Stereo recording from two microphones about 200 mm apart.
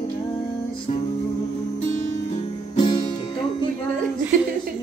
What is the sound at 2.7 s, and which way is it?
Music, 25° left (ahead or behind).